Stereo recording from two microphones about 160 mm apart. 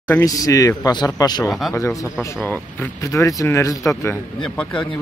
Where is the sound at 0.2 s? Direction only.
20° left (ahead or behind).